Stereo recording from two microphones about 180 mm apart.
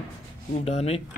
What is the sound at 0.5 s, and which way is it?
Speech, 35° left (ahead or behind).